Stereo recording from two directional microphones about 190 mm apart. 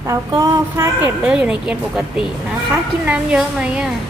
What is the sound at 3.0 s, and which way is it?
Speech, 5° right (ahead or behind).